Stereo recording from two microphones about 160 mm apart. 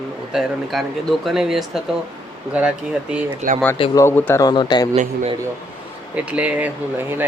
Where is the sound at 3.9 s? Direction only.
15° left (ahead or behind).